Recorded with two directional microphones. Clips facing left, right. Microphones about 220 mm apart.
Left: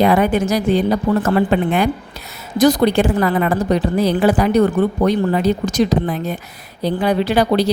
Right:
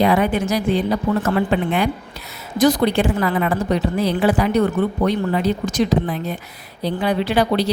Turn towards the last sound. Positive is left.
turn(degrees=40)  # may be behind; listen again after turning